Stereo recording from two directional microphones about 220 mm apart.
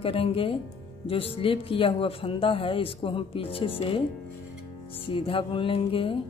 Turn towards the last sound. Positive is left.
turn(degrees=25)  # may be behind; listen again after turning